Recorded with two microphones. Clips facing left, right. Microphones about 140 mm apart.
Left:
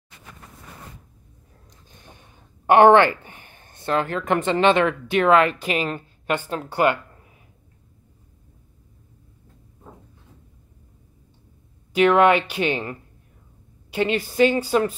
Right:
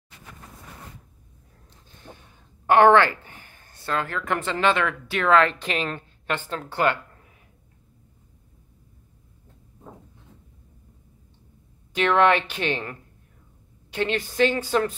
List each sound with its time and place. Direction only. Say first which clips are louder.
1.7 s speech: right 3 dB; 15° left (ahead or behind)
11.9 s a woman's voice: left 4 dB; 10° left (ahead or behind)